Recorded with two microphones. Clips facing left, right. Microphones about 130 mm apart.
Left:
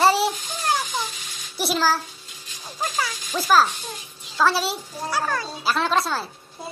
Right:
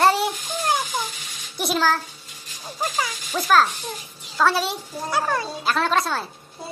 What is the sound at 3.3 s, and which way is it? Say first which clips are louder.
Speech: even; centre (ahead or behind).